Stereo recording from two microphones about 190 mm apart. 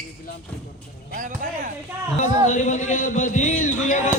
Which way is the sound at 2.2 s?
40° left (ahead or behind).